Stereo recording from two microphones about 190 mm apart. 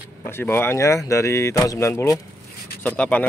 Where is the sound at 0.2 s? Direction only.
15° left (ahead or behind).